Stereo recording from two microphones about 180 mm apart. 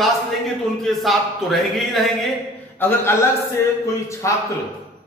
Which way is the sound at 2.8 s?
10° left (ahead or behind).